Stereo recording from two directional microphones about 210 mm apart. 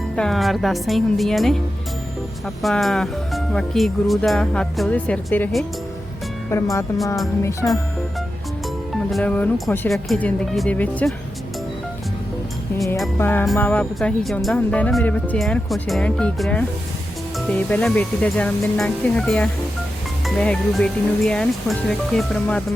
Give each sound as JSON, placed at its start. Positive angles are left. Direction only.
{"t": 0.2, "sound": "speech", "side_deg": 0}
{"t": 9.0, "sound": "speech", "side_deg": 5}
{"t": 13.1, "sound": "speech", "side_deg": 10}